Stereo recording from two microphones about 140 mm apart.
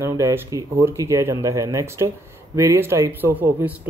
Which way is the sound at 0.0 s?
20° right (ahead or behind).